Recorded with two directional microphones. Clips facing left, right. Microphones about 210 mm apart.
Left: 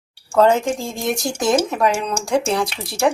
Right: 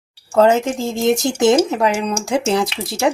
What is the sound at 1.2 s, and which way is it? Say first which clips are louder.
Speech: right 4 dB; 25° right (ahead or behind).